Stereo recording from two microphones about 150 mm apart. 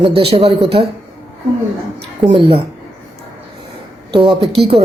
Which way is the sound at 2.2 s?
40° right (ahead or behind).